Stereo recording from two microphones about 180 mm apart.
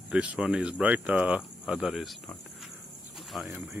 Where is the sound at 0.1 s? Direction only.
5° right (ahead or behind).